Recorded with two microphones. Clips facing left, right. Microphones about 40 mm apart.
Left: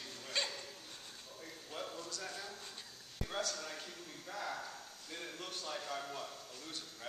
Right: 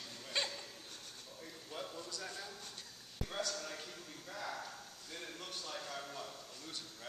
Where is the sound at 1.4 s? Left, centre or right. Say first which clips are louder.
Left 1 dB; centre.